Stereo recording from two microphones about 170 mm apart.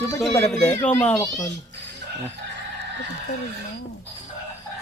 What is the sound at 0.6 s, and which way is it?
Speech, 10° left (ahead or behind).